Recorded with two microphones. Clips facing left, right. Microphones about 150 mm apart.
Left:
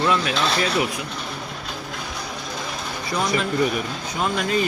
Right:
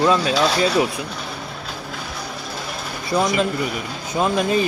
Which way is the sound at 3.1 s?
30° right (ahead or behind).